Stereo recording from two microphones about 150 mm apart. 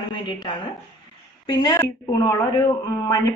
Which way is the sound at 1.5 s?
25° left (ahead or behind).